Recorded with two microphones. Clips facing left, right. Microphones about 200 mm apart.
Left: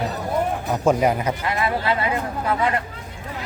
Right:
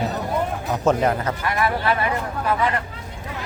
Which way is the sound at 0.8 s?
10° left (ahead or behind).